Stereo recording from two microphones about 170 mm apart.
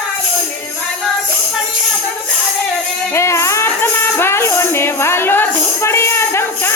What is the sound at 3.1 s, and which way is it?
Music, 15° left (ahead or behind).